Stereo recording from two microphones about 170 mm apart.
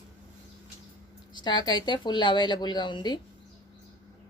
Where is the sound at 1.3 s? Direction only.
25° left (ahead or behind).